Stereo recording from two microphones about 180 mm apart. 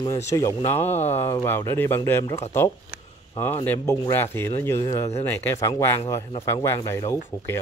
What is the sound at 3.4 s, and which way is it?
Speech, 10° left (ahead or behind).